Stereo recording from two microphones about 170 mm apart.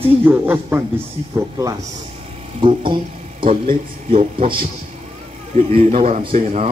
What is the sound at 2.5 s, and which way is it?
Speech, 30° right (ahead or behind).